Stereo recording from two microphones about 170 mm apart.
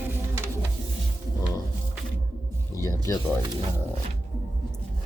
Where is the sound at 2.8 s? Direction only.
20° left (ahead or behind).